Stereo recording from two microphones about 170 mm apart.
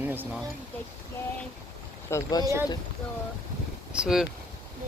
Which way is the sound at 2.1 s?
20° left (ahead or behind).